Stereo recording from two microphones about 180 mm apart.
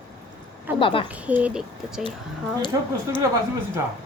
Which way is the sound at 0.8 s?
30° left (ahead or behind).